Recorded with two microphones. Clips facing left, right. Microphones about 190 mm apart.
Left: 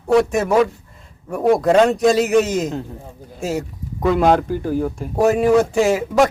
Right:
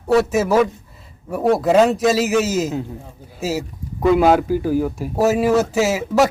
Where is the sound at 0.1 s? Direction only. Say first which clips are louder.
Even; 5° right (ahead or behind).